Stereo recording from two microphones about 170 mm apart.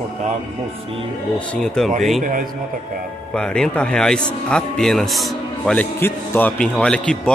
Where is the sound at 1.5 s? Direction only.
5° left (ahead or behind).